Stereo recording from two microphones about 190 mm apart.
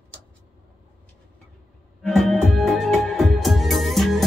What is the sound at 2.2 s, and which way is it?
Music, centre (ahead or behind).